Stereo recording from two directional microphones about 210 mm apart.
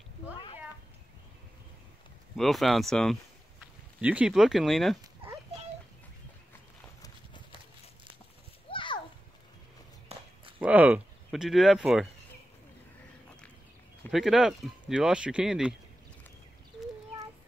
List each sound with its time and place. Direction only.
2.3 s speech: centre (ahead or behind)
8.6 s a sound: 25° left (ahead or behind)
10.1 s walk: 30° right (ahead or behind)
10.6 s speech: 5° right (ahead or behind)
14.1 s speech: 5° right (ahead or behind)